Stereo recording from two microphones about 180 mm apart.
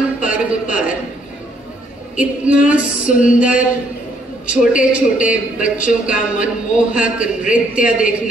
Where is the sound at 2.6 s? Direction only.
5° right (ahead or behind).